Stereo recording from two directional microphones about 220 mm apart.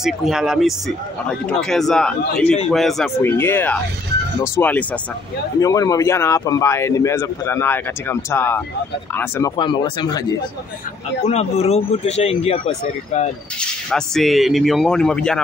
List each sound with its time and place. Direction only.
0.0 s speech: centre (ahead or behind)
9.6 s speech: 20° left (ahead or behind)
11.2 s speech: 30° left (ahead or behind)
13.6 s speech: 5° left (ahead or behind)